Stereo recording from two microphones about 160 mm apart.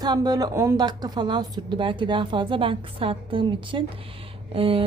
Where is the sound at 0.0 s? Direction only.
25° right (ahead or behind).